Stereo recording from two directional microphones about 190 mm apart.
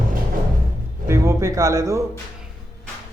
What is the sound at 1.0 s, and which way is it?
Speech, 15° right (ahead or behind).